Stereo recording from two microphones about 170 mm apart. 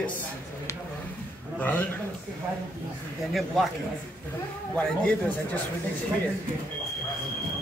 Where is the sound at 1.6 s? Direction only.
10° left (ahead or behind).